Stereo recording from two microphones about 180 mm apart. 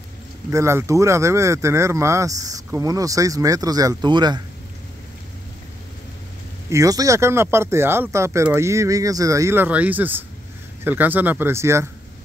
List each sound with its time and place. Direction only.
0.5 s speech: 15° right (ahead or behind)
6.7 s speech: 20° right (ahead or behind)